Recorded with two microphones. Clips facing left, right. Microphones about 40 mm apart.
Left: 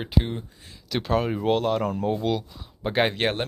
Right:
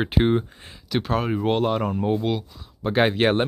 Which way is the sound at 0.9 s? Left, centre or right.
Centre.